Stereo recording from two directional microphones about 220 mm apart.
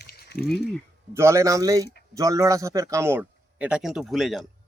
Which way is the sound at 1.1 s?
10° right (ahead or behind).